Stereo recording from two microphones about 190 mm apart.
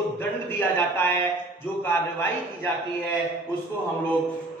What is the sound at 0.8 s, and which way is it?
A man's voice, 10° left (ahead or behind).